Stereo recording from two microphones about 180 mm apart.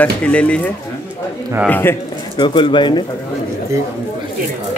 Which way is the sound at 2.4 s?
25° left (ahead or behind).